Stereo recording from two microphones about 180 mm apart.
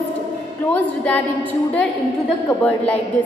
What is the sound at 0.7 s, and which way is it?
Speech, 10° left (ahead or behind).